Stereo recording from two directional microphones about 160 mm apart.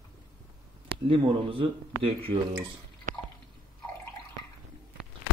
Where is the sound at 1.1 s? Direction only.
35° right (ahead or behind).